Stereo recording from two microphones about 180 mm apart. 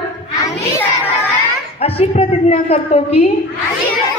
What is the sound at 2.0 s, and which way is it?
A woman's voice, 35° left (ahead or behind).